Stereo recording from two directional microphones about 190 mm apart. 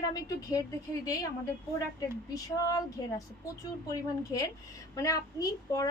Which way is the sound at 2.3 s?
20° left (ahead or behind).